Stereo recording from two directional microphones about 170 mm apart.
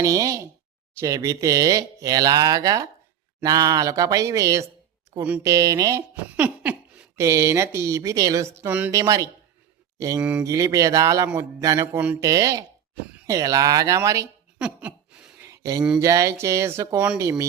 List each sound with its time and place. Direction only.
0.0 s speech: 20° right (ahead or behind)
6.2 s speech: 10° right (ahead or behind)
10.2 s speech: 5° right (ahead or behind)
10.4 s speech: 20° right (ahead or behind)
14.6 s a sound: 5° right (ahead or behind)
15.4 s a sound: 20° right (ahead or behind)
16.0 s speech: 20° right (ahead or behind)